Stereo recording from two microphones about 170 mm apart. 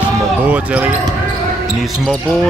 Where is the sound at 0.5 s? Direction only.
10° right (ahead or behind).